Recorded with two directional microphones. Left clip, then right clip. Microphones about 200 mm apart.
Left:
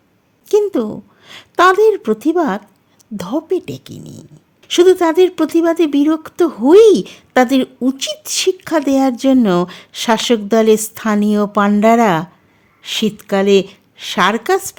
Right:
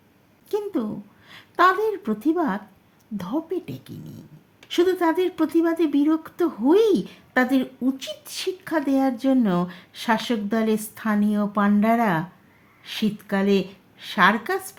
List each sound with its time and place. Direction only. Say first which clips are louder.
0.4 s a woman's voice: left 12 dB; 50° left (ahead or behind)